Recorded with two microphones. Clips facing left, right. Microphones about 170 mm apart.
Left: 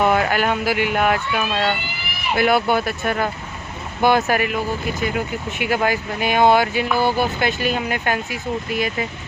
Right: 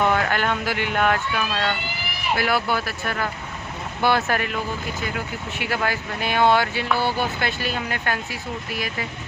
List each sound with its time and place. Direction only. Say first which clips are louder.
0.0 s speech: left 3 dB; 10° left (ahead or behind)